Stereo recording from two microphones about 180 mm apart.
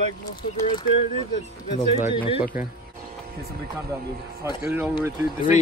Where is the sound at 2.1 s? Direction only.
30° left (ahead or behind).